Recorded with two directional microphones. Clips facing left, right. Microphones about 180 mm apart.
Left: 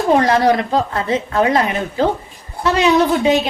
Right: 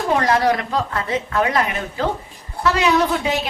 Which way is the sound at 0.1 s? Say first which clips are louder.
Left 4 dB; 25° left (ahead or behind).